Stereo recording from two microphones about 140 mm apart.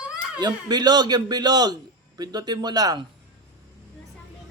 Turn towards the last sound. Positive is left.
turn(degrees=-30)  # may be behind; listen again after turning